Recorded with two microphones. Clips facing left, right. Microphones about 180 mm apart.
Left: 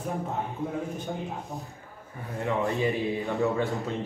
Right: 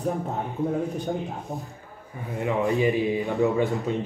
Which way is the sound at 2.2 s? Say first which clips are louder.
Right 3 dB; 15° right (ahead or behind).